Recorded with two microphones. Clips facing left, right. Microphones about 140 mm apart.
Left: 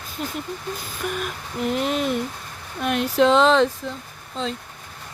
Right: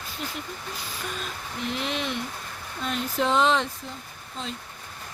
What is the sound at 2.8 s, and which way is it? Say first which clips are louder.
Speech: left 8 dB; 70° left (ahead or behind).